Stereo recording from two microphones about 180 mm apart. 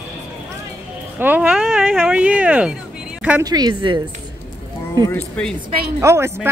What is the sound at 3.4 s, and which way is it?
Speech, 20° right (ahead or behind).